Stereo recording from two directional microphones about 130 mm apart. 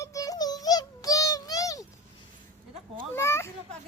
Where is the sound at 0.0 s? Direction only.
25° left (ahead or behind).